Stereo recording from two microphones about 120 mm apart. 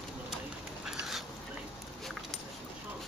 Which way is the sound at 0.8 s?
5° right (ahead or behind).